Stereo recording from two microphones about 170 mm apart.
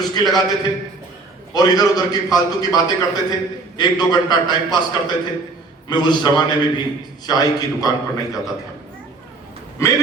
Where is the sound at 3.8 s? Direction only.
25° left (ahead or behind).